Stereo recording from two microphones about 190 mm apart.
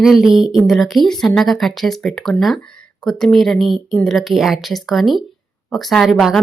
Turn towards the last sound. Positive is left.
turn(degrees=0)  # may be behind; listen again after turning